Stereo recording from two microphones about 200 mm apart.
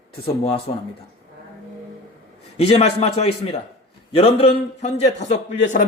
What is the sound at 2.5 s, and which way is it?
A man's voice, 30° left (ahead or behind).